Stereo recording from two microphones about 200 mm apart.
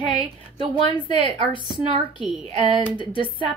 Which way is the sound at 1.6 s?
25° right (ahead or behind).